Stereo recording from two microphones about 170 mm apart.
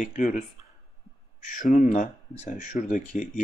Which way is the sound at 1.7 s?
50° left (ahead or behind).